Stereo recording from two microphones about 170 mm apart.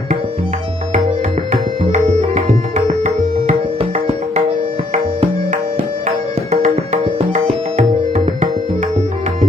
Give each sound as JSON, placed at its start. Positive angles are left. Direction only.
{"t": 1.5, "sound": "tabla", "side_deg": -45}
{"t": 6.0, "sound": "music", "side_deg": -45}